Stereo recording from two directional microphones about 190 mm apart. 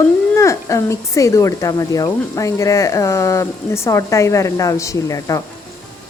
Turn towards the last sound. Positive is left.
turn(degrees=15)  # may be behind; listen again after turning